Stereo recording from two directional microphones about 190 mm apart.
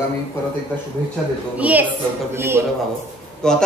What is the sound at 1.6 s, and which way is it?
A woman's voice, 5° right (ahead or behind).